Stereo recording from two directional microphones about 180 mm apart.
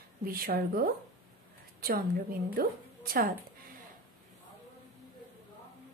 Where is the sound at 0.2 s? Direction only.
55° right (ahead or behind).